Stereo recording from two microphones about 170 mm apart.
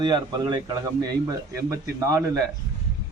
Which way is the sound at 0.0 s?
25° right (ahead or behind).